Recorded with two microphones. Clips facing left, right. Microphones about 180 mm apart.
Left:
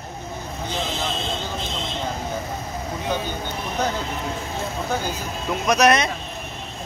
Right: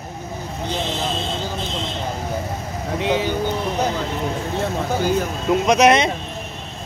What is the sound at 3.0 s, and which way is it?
Speech, 80° right.